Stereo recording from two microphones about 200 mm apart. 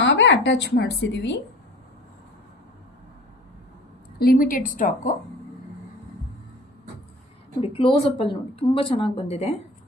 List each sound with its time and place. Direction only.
0.0 s speech: 60° left (ahead or behind)
4.2 s a woman's voice: 45° left (ahead or behind)
7.6 s a woman's voice: 25° left (ahead or behind)